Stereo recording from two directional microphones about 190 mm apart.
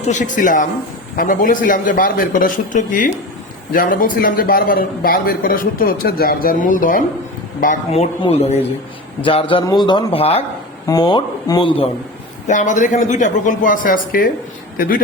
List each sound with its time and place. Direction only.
0.1 s a man's voice: 40° left (ahead or behind)
12.5 s a man's voice: 40° left (ahead or behind)